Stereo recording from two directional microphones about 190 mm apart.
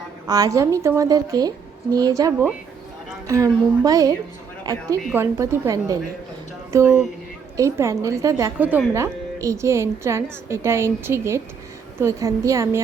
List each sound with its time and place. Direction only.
0.3 s a woman's voice: 20° right (ahead or behind)